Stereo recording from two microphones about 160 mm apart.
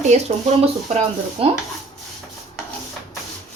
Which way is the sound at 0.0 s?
45° right (ahead or behind).